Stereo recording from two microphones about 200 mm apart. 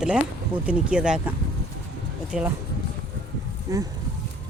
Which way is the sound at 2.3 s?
Centre (ahead or behind).